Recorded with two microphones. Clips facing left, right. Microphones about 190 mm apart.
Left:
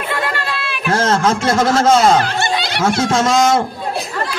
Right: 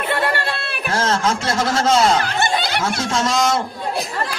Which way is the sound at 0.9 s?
50° left (ahead or behind).